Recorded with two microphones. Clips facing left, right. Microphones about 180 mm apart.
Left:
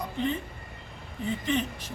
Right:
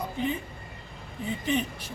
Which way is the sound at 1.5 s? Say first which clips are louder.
Right 2 dB; 10° right (ahead or behind).